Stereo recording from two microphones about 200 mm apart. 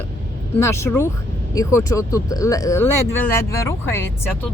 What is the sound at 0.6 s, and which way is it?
Speech, 15° left (ahead or behind).